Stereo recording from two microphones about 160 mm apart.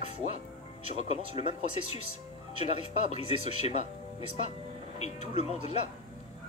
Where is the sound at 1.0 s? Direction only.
40° left (ahead or behind).